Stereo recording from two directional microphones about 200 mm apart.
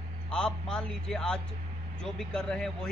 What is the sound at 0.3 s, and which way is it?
Speech, 5° left (ahead or behind).